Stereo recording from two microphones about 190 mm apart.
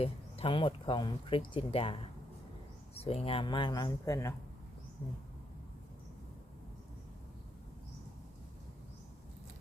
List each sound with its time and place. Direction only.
0.0 s speech: 30° left (ahead or behind)